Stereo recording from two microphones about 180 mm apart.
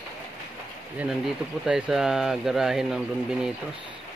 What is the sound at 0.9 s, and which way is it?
Speech, 5° right (ahead or behind).